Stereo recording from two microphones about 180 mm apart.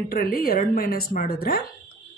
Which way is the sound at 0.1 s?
55° left (ahead or behind).